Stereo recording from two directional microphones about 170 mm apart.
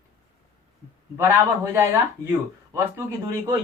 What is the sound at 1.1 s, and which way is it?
Speech, 15° right (ahead or behind).